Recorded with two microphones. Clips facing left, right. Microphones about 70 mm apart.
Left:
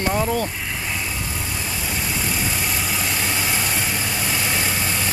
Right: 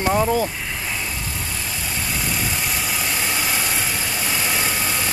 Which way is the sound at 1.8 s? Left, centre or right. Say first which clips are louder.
Even; centre.